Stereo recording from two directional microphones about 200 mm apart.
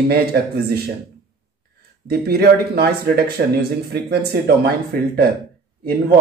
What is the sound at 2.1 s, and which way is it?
Speech, 50° right (ahead or behind).